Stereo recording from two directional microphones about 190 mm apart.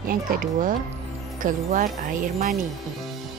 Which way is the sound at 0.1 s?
45° right (ahead or behind).